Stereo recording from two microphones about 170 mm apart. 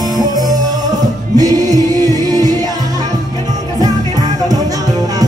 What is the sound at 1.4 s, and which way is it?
Music, 20° right (ahead or behind).